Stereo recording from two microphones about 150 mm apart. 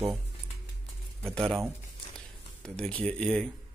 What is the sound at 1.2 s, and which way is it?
Speech, centre (ahead or behind).